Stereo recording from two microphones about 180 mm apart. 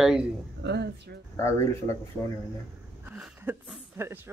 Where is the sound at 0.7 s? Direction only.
70° right (ahead or behind).